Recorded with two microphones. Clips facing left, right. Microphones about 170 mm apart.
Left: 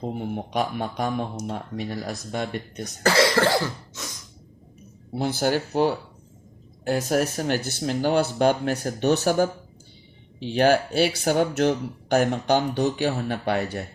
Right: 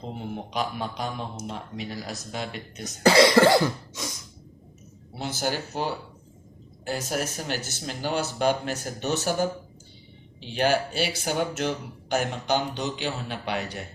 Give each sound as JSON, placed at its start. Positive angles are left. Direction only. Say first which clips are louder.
{"t": 0.5, "sound": "speech", "louder": "left 3 dB", "side_deg": 50}
{"t": 3.0, "sound": "cough", "louder": "right 3 dB", "side_deg": -15}
{"t": 5.1, "sound": "speech", "louder": "left 6 dB", "side_deg": 55}
{"t": 10.5, "sound": "speech", "louder": "left 5 dB", "side_deg": 55}